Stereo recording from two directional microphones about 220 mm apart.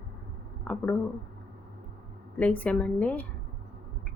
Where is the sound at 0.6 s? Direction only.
5° left (ahead or behind).